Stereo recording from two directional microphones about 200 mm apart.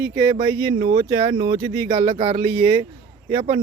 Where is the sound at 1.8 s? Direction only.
35° right (ahead or behind).